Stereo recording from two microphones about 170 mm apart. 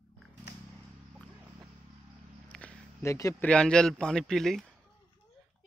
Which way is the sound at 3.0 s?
15° left (ahead or behind).